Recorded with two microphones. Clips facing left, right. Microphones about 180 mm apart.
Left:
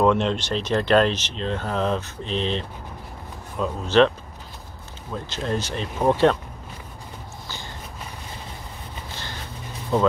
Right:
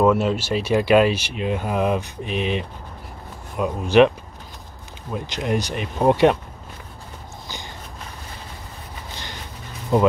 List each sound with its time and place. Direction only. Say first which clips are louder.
0.0 s speech: right 2 dB; 5° right (ahead or behind)
5.1 s speech: right 3 dB; 15° right (ahead or behind)
9.9 s speech: right 3 dB; 10° right (ahead or behind)